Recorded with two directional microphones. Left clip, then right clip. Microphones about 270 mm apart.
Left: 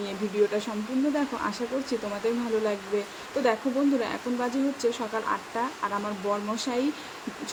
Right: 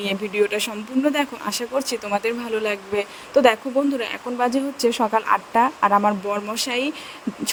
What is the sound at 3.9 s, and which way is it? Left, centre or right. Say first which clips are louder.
Speech: right 5 dB; right.